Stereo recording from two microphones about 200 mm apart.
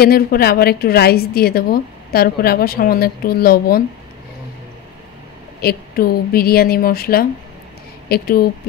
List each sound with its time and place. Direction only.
0.0 s a woman's voice: 50° left (ahead or behind)
5.6 s a woman's voice: 50° left (ahead or behind)